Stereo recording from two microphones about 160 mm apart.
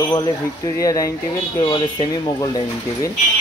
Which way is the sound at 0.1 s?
20° left (ahead or behind).